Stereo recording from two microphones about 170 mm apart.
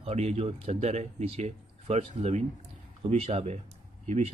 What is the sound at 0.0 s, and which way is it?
Speech, 40° right (ahead or behind).